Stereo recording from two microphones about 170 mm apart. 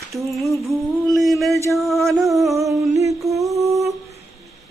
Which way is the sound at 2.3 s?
20° right (ahead or behind).